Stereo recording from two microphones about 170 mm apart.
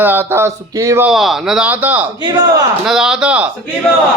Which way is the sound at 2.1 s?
25° right (ahead or behind).